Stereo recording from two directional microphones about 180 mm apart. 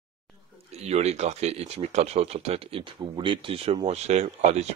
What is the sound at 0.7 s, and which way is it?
Speech, 35° right (ahead or behind).